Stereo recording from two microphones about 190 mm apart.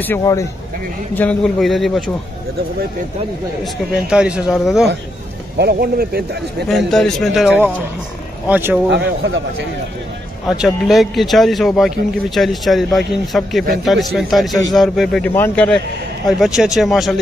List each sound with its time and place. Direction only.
0.0 s a man's voice: 15° left (ahead or behind)
4.1 s a man's voice: 5° right (ahead or behind)
5.6 s speech: 55° right (ahead or behind)
6.7 s a man's voice: centre (ahead or behind)
8.9 s speech: 65° right (ahead or behind)
10.5 s a man's voice: centre (ahead or behind)